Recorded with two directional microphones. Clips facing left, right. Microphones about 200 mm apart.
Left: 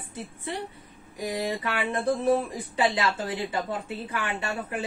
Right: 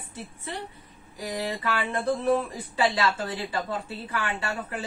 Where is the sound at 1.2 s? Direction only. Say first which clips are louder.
Left 1 dB; 20° left (ahead or behind).